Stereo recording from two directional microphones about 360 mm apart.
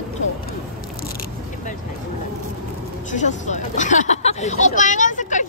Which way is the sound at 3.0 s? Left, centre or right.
Centre.